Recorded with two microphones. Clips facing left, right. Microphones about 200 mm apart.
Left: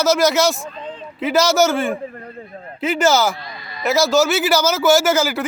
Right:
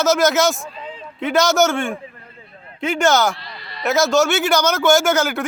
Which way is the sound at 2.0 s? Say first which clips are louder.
Left 9 dB; 45° left (ahead or behind).